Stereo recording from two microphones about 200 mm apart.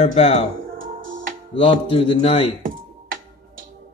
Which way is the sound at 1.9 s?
30° left (ahead or behind).